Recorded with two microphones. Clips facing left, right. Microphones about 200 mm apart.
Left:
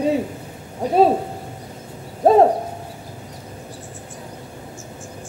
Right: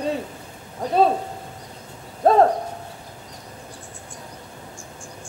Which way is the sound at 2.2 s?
15° left (ahead or behind).